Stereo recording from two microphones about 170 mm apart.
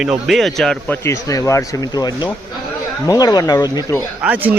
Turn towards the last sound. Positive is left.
turn(degrees=-10)  # may be behind; listen again after turning